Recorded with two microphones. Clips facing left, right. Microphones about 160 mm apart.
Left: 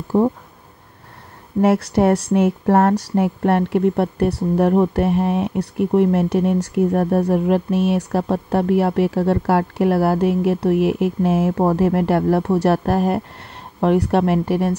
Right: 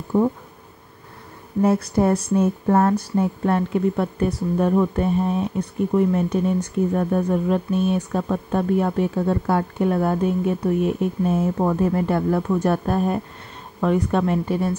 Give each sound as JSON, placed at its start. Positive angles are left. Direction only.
{"t": 0.1, "sound": "speech", "side_deg": 80}
{"t": 1.6, "sound": "speech", "side_deg": 85}
{"t": 3.2, "sound": "speech", "side_deg": 75}